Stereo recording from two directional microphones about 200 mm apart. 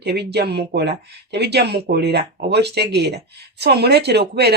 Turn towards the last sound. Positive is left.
turn(degrees=-55)  # may be behind; listen again after turning